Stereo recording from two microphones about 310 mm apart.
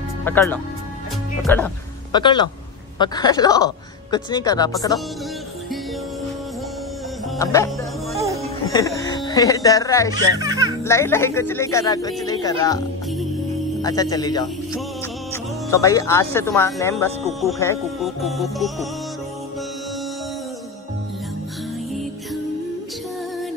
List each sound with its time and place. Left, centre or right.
0.2 s speech: centre
7.3 s music: centre
8.2 s music: centre
8.6 s speech: centre
10.1 s a child's voice: centre
10.8 s speech: centre
13.8 s speech: centre